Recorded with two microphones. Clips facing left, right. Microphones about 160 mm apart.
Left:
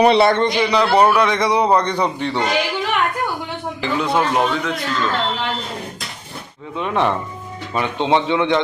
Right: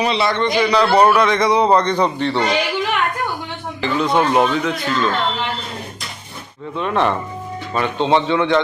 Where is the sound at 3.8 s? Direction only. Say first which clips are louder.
Right 2 dB; 10° left (ahead or behind).